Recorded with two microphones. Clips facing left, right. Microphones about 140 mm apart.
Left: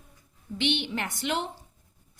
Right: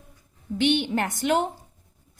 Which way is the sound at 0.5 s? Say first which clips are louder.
Right 7 dB; 45° right (ahead or behind).